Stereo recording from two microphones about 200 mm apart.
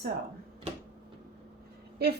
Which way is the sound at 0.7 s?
30° right (ahead or behind).